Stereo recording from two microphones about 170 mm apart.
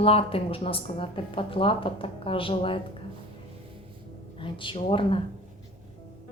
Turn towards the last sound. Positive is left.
turn(degrees=35)  # may be behind; listen again after turning